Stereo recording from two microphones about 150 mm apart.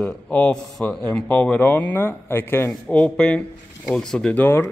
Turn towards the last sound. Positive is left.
turn(degrees=15)  # may be behind; listen again after turning